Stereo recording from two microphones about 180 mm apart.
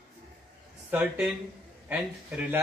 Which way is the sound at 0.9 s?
10° right (ahead or behind).